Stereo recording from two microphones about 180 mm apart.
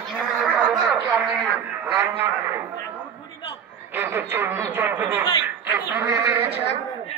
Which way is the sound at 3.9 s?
10° right (ahead or behind).